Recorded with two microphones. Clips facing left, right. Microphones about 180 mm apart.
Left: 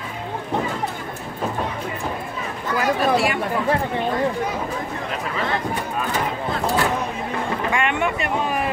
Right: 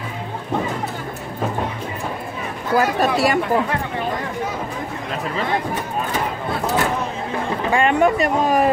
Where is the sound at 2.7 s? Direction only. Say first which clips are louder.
Right 2 dB; 40° right (ahead or behind).